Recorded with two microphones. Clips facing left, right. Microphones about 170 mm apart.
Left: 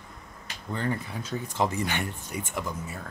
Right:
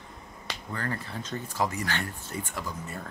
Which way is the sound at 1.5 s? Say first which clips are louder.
Left 2 dB; 25° left (ahead or behind).